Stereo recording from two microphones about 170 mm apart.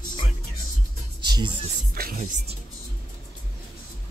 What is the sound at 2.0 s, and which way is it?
Music, 65° right (ahead or behind).